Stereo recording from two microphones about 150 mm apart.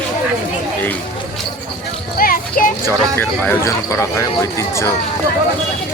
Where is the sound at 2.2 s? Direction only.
70° left (ahead or behind).